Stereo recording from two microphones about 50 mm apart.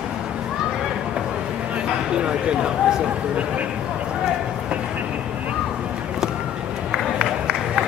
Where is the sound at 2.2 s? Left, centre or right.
Centre.